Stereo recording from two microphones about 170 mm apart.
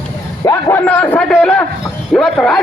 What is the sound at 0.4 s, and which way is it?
A man's voice, 10° left (ahead or behind).